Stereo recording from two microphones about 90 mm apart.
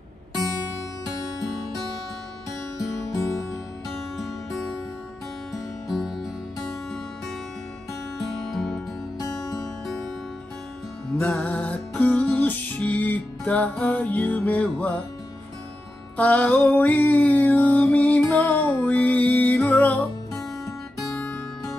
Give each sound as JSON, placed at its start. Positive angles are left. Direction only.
{"t": 1.0, "sound": "music", "side_deg": 40}
{"t": 2.8, "sound": "music", "side_deg": 40}
{"t": 4.2, "sound": "music", "side_deg": 5}
{"t": 5.9, "sound": "music", "side_deg": 0}
{"t": 8.5, "sound": "music", "side_deg": 5}
{"t": 11.1, "sound": "music", "side_deg": 20}
{"t": 16.2, "sound": "music", "side_deg": 15}
{"t": 21.0, "sound": "guitar", "side_deg": 10}